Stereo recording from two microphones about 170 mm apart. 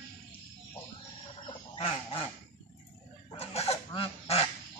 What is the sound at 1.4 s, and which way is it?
Goose, 35° left (ahead or behind).